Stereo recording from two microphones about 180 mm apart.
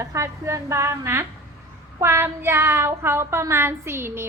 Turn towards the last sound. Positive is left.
turn(degrees=-15)  # may be behind; listen again after turning